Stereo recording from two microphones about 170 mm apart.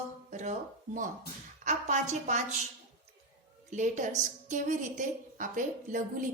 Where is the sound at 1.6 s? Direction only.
45° right (ahead or behind).